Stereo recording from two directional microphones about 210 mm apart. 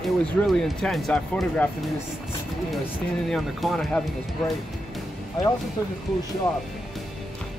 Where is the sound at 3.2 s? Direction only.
Centre (ahead or behind).